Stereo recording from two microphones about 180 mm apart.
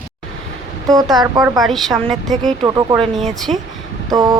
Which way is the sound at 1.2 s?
20° right (ahead or behind).